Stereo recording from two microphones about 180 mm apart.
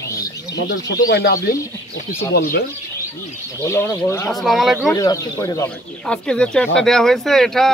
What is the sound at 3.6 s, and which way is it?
Speech, 15° left (ahead or behind).